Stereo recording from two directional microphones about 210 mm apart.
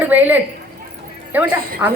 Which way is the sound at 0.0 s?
10° right (ahead or behind).